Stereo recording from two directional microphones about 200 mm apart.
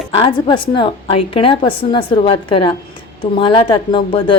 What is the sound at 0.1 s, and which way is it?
Speech, 25° left (ahead or behind).